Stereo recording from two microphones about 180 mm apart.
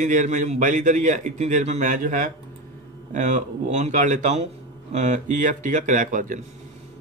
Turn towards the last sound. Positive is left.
turn(degrees=-45)  # may be behind; listen again after turning